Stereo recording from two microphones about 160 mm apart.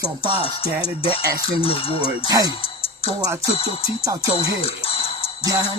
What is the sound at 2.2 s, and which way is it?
Music, 25° right (ahead or behind).